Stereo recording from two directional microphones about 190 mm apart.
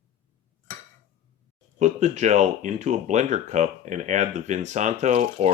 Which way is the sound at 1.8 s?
40° right (ahead or behind).